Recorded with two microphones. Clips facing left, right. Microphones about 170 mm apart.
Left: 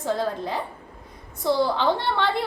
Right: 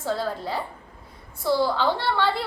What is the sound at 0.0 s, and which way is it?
Speech, 20° left (ahead or behind).